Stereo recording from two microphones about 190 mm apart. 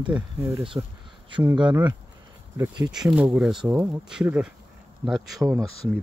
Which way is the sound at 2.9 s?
5° right (ahead or behind).